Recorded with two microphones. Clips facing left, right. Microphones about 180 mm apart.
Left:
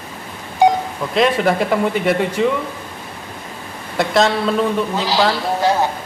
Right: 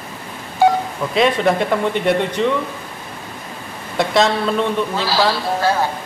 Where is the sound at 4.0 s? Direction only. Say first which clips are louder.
Even; centre (ahead or behind).